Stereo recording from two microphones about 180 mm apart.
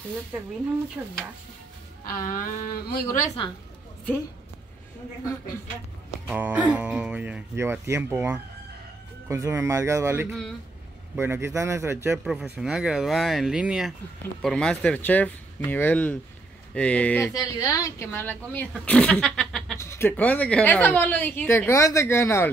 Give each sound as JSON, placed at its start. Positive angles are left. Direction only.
{"t": 2.0, "sound": "speech", "side_deg": 50}
{"t": 3.2, "sound": "a woman's voice", "side_deg": 25}
{"t": 6.2, "sound": "a woman's voice", "side_deg": -10}
{"t": 17.3, "sound": "a woman's voice", "side_deg": 20}
{"t": 19.8, "sound": "a woman's voice", "side_deg": 15}